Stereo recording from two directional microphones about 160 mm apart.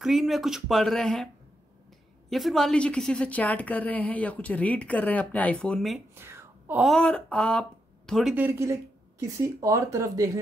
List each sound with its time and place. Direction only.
0.0 s a woman's voice: centre (ahead or behind)
6.1 s a sound: 15° right (ahead or behind)
6.8 s speech: centre (ahead or behind)
8.4 s speech: 15° right (ahead or behind)